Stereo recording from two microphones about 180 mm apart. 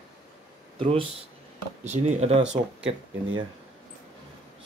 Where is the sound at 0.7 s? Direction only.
30° right (ahead or behind).